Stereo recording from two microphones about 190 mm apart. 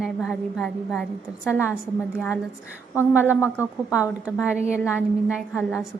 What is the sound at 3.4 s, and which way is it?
Speech, 10° left (ahead or behind).